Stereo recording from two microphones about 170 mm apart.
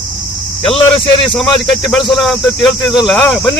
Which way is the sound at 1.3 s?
Centre (ahead or behind).